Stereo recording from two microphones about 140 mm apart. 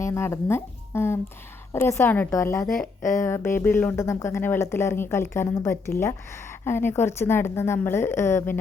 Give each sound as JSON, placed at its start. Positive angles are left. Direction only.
{"t": 0.0, "sound": "a woman's voice", "side_deg": 20}
{"t": 2.8, "sound": "speech", "side_deg": 65}
{"t": 3.2, "sound": "a woman's voice", "side_deg": 20}